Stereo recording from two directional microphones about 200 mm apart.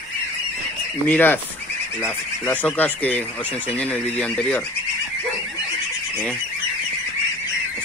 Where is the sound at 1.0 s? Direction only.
10° left (ahead or behind).